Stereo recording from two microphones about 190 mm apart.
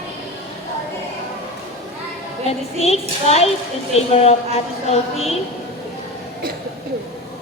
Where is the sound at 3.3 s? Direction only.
35° left (ahead or behind).